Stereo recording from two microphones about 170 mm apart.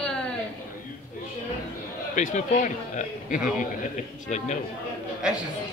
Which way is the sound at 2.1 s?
45° left (ahead or behind).